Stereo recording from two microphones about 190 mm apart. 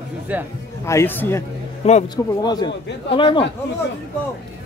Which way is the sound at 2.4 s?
20° left (ahead or behind).